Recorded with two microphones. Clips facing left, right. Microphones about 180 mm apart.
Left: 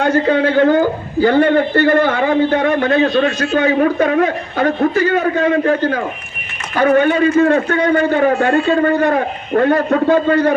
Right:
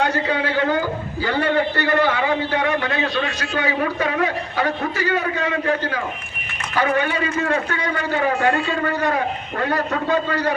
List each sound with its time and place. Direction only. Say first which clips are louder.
0.0 s a man's voice: left 7 dB; 50° left (ahead or behind)